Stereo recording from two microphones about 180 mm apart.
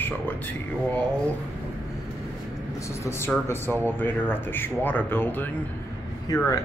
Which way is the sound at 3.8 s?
10° left (ahead or behind).